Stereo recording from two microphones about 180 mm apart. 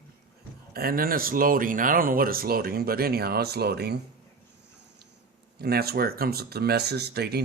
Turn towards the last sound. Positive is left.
turn(degrees=-65)  # may be behind; listen again after turning